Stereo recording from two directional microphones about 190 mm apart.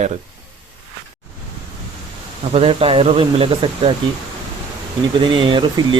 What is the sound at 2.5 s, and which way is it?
Speech, 30° right (ahead or behind).